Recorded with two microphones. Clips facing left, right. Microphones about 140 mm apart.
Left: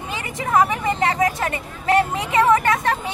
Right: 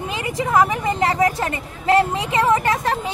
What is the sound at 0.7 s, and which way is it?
Speech, 30° right (ahead or behind).